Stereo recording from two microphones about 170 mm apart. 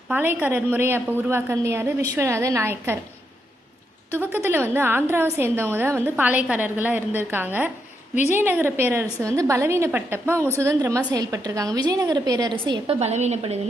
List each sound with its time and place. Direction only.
0.1 s a woman's voice: 10° right (ahead or behind)
4.3 s a woman's voice: 15° right (ahead or behind)
13.0 s a woman's voice: 40° right (ahead or behind)